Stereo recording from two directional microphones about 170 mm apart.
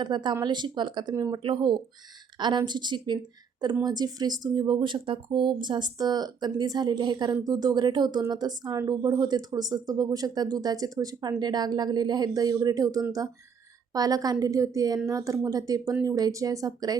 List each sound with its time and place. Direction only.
0.0 s speech: 25° right (ahead or behind)
1.4 s speech: 30° right (ahead or behind)